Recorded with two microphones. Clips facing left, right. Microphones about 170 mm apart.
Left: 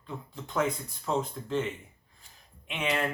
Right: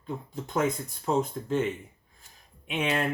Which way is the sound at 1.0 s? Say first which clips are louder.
Right 4 dB; 50° right (ahead or behind).